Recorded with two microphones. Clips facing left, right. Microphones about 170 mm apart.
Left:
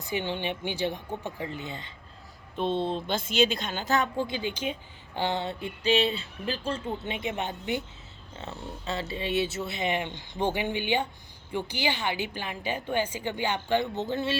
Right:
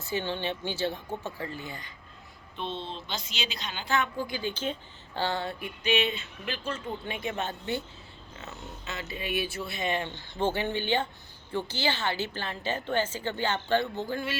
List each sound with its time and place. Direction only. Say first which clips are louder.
0.0 s a woman's voice: left 1 dB; 15° left (ahead or behind)
2.6 s speech: left 8 dB; 50° left (ahead or behind)
4.2 s speech: left 2 dB; 20° left (ahead or behind)
8.4 s a woman's voice: left 4 dB; 30° left (ahead or behind)